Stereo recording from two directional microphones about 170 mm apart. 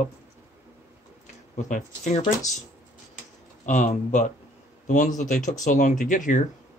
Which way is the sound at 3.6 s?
45° left (ahead or behind).